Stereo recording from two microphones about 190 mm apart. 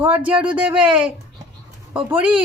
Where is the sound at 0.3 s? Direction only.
5° right (ahead or behind).